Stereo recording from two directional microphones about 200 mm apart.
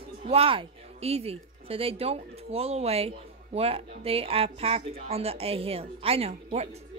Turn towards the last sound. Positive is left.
turn(degrees=-35)  # may be behind; listen again after turning